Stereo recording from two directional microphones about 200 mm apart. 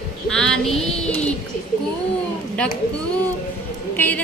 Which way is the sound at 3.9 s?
10° left (ahead or behind).